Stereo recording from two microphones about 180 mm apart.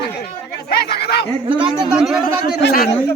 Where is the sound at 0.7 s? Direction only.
65° left (ahead or behind).